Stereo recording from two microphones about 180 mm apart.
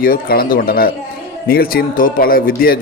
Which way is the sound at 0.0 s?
55° left (ahead or behind).